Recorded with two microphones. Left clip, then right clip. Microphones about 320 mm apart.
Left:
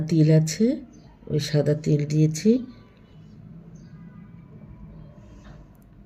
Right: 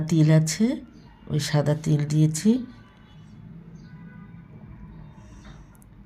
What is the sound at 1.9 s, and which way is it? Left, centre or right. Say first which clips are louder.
Speech: left 2 dB; right.